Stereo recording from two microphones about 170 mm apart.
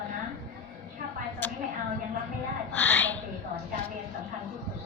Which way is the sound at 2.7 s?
10° left (ahead or behind).